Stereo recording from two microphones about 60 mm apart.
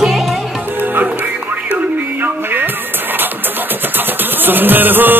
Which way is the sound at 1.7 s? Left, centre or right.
Right.